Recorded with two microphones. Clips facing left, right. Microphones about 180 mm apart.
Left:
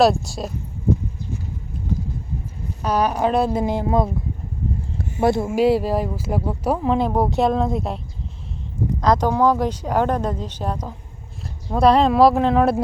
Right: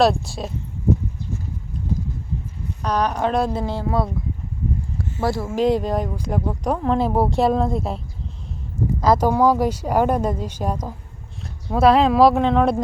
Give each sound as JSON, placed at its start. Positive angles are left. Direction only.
{"t": 0.0, "sound": "speech", "side_deg": 0}
{"t": 2.8, "sound": "speech", "side_deg": 5}
{"t": 3.6, "sound": "speech", "side_deg": 15}
{"t": 4.9, "sound": "a sound", "side_deg": 20}
{"t": 5.5, "sound": "speech", "side_deg": 5}